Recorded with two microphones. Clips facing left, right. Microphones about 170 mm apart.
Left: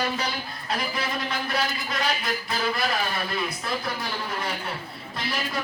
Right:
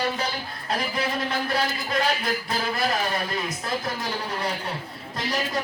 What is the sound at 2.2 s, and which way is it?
Speech, 30° right (ahead or behind).